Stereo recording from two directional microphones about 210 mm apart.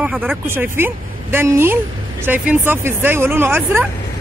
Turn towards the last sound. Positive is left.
turn(degrees=-10)  # may be behind; listen again after turning